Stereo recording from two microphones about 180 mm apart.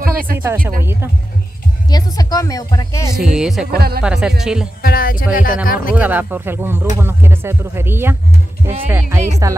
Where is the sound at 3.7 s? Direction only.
60° right (ahead or behind).